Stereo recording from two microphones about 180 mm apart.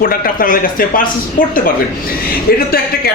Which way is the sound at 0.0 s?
50° left (ahead or behind).